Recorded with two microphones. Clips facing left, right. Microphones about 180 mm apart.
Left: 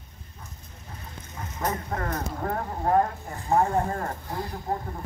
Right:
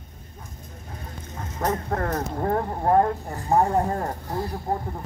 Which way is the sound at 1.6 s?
45° right (ahead or behind).